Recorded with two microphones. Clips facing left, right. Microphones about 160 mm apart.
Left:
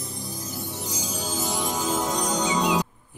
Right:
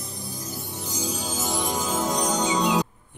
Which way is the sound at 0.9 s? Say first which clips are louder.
Right 2 dB; centre (ahead or behind).